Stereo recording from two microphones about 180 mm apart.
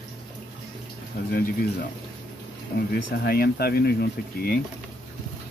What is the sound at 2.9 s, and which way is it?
Speech, 60° left (ahead or behind).